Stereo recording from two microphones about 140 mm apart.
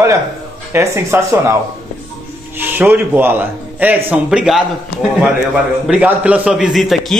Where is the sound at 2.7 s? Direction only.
15° right (ahead or behind).